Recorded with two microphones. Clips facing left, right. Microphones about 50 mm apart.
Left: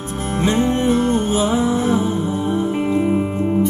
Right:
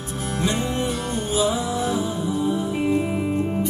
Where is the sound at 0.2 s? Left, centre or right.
Left.